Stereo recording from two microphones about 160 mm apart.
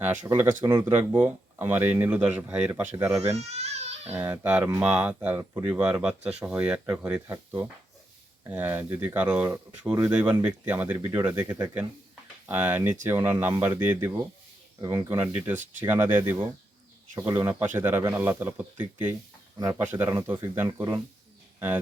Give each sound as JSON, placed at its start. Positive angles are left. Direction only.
{"t": 0.0, "sound": "speech", "side_deg": -10}
{"t": 3.3, "sound": "babbling", "side_deg": -40}
{"t": 4.1, "sound": "speech", "side_deg": -10}
{"t": 8.4, "sound": "speech", "side_deg": -10}